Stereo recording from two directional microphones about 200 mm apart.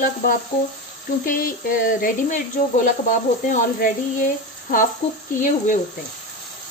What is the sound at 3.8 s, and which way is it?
Speech, 45° left (ahead or behind).